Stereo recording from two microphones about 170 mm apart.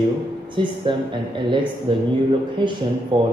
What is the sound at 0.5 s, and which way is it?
A man's voice, 30° right (ahead or behind).